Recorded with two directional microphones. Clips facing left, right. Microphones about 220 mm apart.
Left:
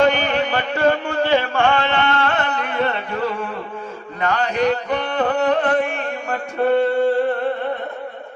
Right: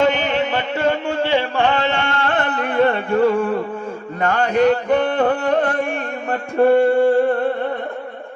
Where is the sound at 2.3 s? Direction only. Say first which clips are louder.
Right 3 dB; 50° right (ahead or behind).